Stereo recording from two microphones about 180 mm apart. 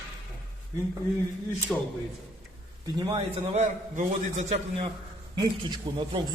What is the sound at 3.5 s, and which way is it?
A man's voice, 40° right (ahead or behind).